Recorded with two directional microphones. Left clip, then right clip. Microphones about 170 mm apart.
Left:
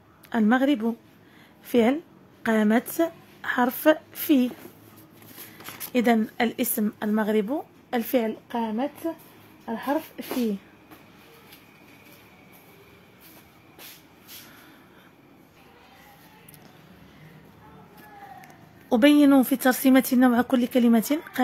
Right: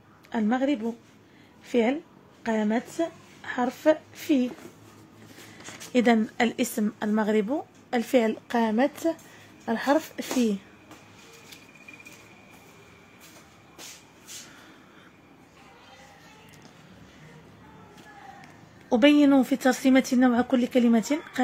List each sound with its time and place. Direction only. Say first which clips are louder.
0.3 s a woman's voice: left 4 dB; 25° left (ahead or behind)
1.7 s a woman's voice: left 3 dB; 20° left (ahead or behind)
5.9 s a woman's voice: even; centre (ahead or behind)
8.3 s a woman's voice: right 3 dB; 20° right (ahead or behind)
18.9 s speech: left 1 dB; 10° left (ahead or behind)